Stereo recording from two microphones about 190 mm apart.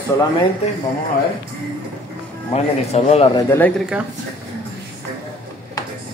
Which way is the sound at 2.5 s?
35° left (ahead or behind).